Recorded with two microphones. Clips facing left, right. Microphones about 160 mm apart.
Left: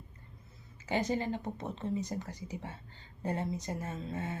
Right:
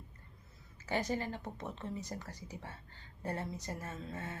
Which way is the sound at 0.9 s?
20° left (ahead or behind).